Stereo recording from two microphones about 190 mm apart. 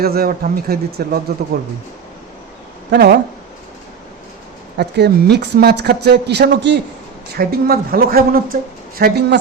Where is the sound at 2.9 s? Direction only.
55° right (ahead or behind).